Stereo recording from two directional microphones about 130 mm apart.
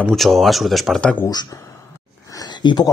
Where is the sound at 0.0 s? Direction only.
Centre (ahead or behind).